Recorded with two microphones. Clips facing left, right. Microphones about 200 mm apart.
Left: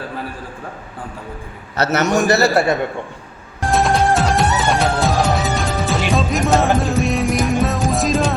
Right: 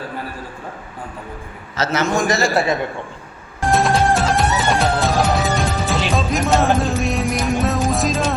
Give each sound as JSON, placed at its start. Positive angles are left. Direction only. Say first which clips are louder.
{"t": 1.7, "sound": "a man's voice", "louder": "left 3 dB", "side_deg": 60}
{"t": 3.7, "sound": "music", "louder": "even", "side_deg": 0}